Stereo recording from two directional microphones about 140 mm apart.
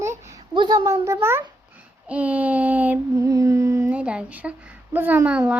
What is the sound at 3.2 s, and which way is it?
Humming, 25° right (ahead or behind).